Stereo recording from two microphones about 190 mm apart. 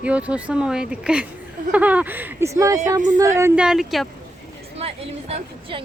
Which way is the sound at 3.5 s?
5° right (ahead or behind).